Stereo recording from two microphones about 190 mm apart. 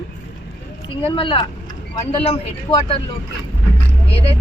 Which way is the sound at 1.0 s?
30° left (ahead or behind).